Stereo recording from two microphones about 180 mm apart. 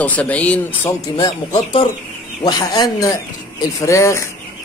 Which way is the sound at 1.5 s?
30° left (ahead or behind).